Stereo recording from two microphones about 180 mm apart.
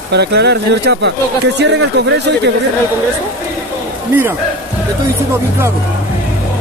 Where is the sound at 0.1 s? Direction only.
70° right (ahead or behind).